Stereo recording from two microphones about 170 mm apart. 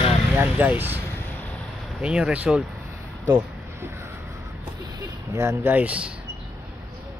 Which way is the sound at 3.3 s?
15° right (ahead or behind).